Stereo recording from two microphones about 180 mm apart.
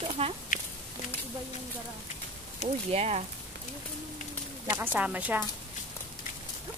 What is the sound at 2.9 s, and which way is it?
Speech, 35° right (ahead or behind).